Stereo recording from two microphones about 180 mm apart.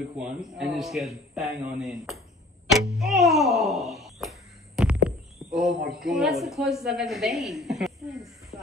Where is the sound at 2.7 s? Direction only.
Centre (ahead or behind).